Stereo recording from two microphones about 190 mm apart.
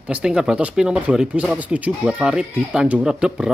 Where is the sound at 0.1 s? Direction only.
5° right (ahead or behind).